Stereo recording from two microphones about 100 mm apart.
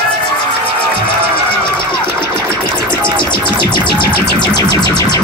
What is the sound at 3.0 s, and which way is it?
Music, 50° left (ahead or behind).